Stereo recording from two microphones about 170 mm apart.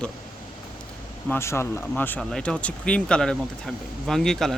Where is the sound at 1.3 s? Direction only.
15° left (ahead or behind).